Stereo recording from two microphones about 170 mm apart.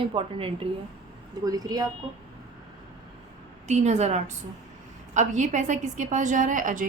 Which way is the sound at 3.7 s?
40° right (ahead or behind).